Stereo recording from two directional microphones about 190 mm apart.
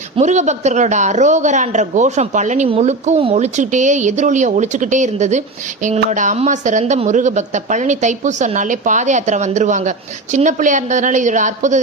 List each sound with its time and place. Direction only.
0.2 s speech: 40° right (ahead or behind)